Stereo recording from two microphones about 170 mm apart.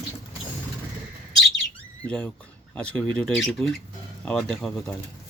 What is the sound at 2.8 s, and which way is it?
Speech, 5° left (ahead or behind).